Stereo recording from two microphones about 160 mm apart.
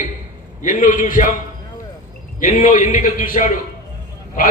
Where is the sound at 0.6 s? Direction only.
55° left (ahead or behind).